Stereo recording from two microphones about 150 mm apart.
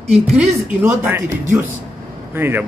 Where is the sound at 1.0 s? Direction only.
15° right (ahead or behind).